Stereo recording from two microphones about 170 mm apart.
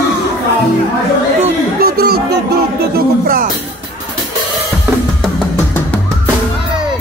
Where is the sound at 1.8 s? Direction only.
65° right (ahead or behind).